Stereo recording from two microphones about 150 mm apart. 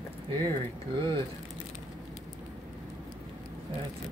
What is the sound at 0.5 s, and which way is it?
Speech, 35° right (ahead or behind).